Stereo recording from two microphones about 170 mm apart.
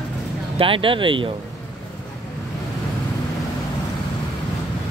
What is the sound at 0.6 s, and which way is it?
Speech, 30° right (ahead or behind).